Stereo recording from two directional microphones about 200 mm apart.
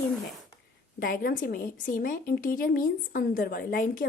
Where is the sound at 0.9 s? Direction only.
45° left (ahead or behind).